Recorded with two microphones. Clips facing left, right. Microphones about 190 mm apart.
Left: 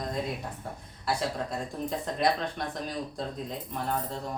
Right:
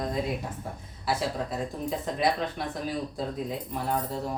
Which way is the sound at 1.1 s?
Centre (ahead or behind).